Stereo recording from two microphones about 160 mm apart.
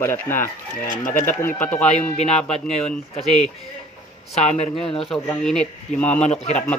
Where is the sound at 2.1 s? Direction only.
40° left (ahead or behind).